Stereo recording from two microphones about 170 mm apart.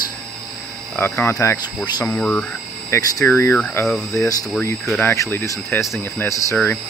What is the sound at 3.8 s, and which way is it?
Speech, centre (ahead or behind).